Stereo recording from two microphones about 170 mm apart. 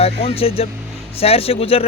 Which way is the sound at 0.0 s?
35° left (ahead or behind).